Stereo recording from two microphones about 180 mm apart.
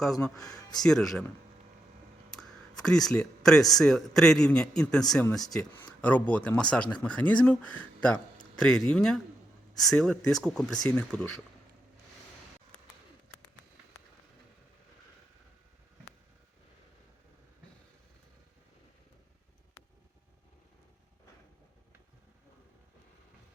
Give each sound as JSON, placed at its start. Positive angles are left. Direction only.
{"t": 0.0, "sound": "a man's voice", "side_deg": 0}
{"t": 2.8, "sound": "a man's voice", "side_deg": 5}